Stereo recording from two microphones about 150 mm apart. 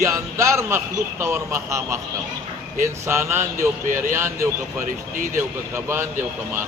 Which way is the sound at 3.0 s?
15° right (ahead or behind).